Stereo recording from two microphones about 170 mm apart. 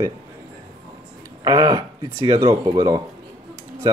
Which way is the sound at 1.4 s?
20° right (ahead or behind).